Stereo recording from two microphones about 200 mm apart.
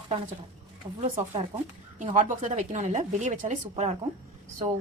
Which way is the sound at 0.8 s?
25° right (ahead or behind).